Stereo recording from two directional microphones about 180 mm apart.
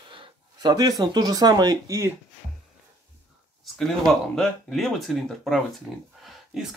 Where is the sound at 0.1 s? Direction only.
25° right (ahead or behind).